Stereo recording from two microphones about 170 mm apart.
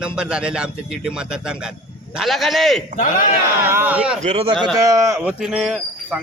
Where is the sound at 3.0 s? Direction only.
50° left (ahead or behind).